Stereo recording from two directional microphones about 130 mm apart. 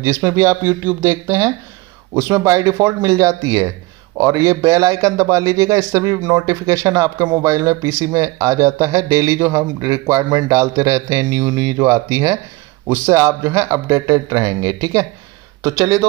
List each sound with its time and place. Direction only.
0.0 s a man's voice: 20° right (ahead or behind)